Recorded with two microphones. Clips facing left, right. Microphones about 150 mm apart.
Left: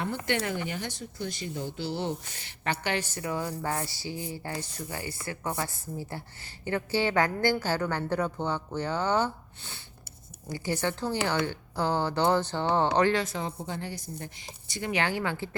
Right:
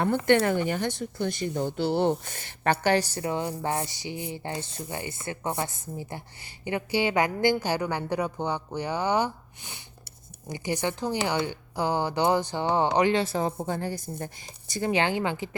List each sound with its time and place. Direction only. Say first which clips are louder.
0.3 s speech: right 9 dB; 55° right (ahead or behind); by 13.2 s 15° right (ahead or behind)
13.2 s a woman's voice: right 6 dB; 40° right (ahead or behind)
14.7 s speech: right 4 dB; 35° right (ahead or behind)